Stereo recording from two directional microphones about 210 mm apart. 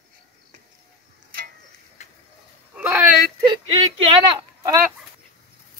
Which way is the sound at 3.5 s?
25° right (ahead or behind).